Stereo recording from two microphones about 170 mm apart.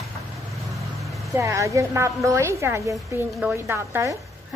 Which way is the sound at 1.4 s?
20° right (ahead or behind).